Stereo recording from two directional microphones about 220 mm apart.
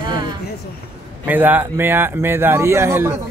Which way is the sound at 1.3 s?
10° right (ahead or behind).